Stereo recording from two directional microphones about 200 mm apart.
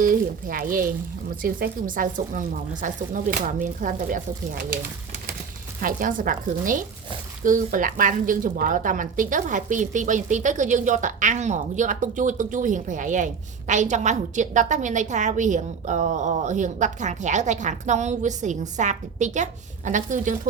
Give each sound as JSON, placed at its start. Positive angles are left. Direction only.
{"t": 0.0, "sound": "sizzle", "side_deg": -45}
{"t": 2.8, "sound": "a woman's voice", "side_deg": -40}
{"t": 5.8, "sound": "sizzle", "side_deg": -40}
{"t": 7.4, "sound": "a woman's voice", "side_deg": -40}